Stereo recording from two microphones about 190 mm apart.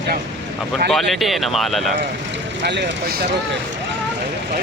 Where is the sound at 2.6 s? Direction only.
70° right (ahead or behind).